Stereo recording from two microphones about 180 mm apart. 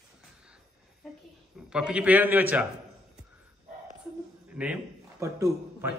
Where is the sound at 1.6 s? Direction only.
5° right (ahead or behind).